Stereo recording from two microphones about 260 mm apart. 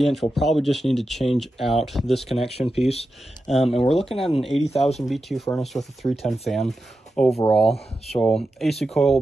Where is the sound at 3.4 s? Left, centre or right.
Centre.